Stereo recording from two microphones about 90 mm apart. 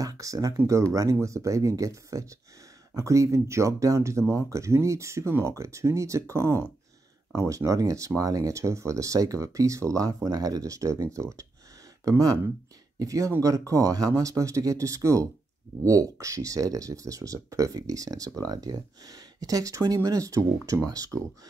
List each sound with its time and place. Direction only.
0.0 s speech: 40° right (ahead or behind)